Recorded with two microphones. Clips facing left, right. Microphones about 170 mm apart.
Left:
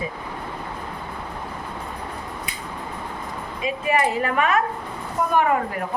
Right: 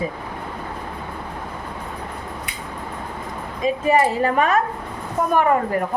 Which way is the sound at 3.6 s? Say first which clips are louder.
Right 4 dB; 40° right (ahead or behind).